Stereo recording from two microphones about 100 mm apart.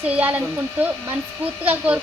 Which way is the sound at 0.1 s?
15° right (ahead or behind).